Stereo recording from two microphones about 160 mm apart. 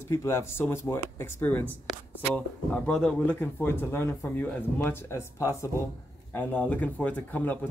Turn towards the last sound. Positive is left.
turn(degrees=10)  # may be behind; listen again after turning